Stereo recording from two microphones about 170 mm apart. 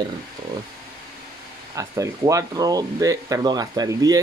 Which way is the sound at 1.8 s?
20° right (ahead or behind).